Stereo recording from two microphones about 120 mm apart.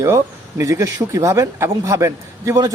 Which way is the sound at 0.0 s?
25° right (ahead or behind).